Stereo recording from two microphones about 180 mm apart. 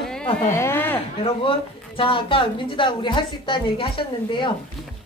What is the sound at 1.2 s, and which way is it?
A woman's voice, 30° left (ahead or behind).